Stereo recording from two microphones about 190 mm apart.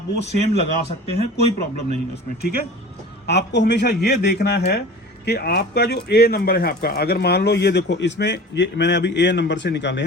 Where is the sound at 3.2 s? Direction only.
65° left (ahead or behind).